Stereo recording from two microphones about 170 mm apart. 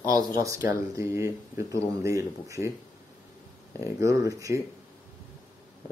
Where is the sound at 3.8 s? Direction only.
20° right (ahead or behind).